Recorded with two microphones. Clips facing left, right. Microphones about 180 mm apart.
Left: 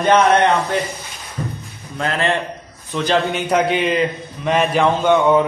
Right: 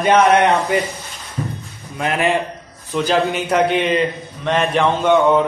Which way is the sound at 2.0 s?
15° right (ahead or behind).